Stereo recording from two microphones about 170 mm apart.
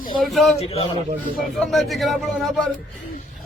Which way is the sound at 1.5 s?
Centre (ahead or behind).